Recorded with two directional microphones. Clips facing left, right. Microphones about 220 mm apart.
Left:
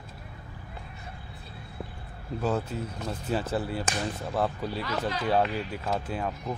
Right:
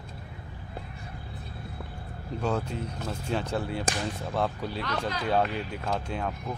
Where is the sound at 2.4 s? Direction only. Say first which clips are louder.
Left 1 dB; 5° left (ahead or behind).